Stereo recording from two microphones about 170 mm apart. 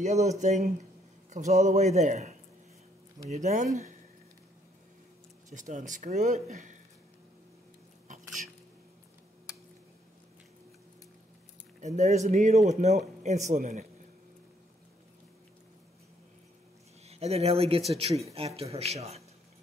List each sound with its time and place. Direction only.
0.0 s speech: 40° right (ahead or behind)
5.5 s speech: 45° right (ahead or behind)
11.8 s speech: 45° right (ahead or behind)
17.1 s speech: 40° right (ahead or behind)